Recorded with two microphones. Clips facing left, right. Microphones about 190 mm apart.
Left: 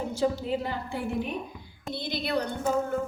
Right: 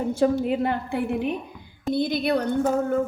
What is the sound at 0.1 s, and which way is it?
A woman's voice, 55° right (ahead or behind).